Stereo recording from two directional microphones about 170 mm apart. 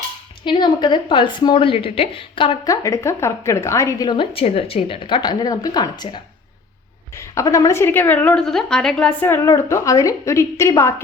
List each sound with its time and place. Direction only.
0.4 s a woman's voice: 25° left (ahead or behind)
2.8 s a woman's voice: 15° left (ahead or behind)